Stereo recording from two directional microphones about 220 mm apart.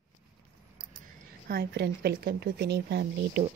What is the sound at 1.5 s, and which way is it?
A woman's voice, 50° right (ahead or behind).